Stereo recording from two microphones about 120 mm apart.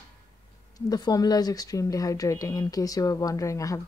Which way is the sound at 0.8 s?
35° left (ahead or behind).